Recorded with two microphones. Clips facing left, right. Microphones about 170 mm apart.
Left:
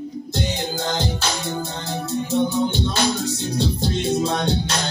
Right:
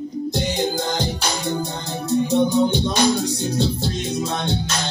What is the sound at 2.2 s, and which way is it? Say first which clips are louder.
Music: right 2 dB; 15° right (ahead or behind).